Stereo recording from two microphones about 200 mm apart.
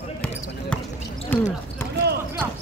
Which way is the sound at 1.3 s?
10° left (ahead or behind).